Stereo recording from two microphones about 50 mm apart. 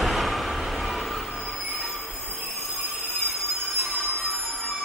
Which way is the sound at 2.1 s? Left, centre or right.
Left.